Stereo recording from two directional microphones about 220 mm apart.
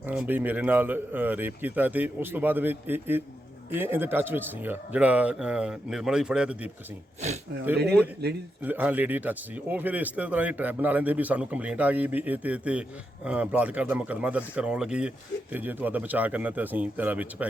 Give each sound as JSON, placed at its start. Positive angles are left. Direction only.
{"t": 0.1, "sound": "a man's voice", "side_deg": -5}
{"t": 7.8, "sound": "speech", "side_deg": -50}
{"t": 8.6, "sound": "speech", "side_deg": -5}